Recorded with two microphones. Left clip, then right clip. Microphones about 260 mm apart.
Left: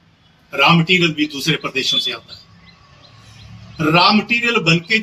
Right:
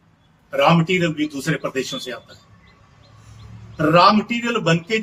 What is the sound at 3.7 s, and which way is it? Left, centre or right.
Speech, centre.